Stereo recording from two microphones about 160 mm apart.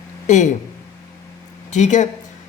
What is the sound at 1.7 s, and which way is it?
Speech, 50° left (ahead or behind).